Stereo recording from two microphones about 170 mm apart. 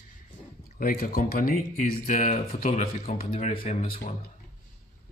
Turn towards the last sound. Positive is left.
turn(degrees=55)  # may be behind; listen again after turning